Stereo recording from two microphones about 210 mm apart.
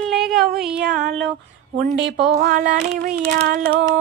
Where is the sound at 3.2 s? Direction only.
50° right (ahead or behind).